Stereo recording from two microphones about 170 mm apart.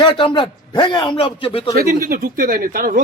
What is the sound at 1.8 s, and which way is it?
Speech, 55° right (ahead or behind).